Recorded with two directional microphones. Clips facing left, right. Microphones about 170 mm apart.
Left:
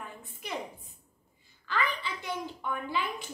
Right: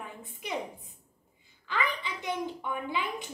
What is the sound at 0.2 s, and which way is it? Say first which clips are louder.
Speech: right 4 dB; 20° right (ahead or behind).